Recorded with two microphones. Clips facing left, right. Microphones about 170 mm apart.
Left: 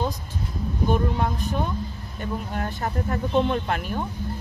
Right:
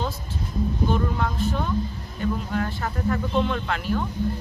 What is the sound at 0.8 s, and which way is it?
Speech, 15° left (ahead or behind).